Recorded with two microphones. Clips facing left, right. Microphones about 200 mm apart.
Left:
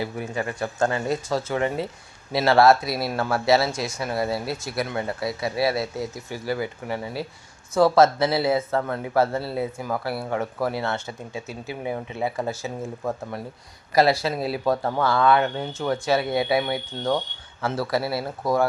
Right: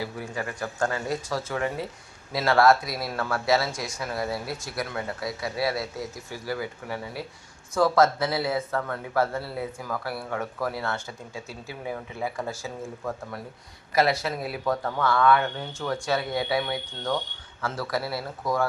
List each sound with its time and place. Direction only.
0.0 s speech: 25° left (ahead or behind)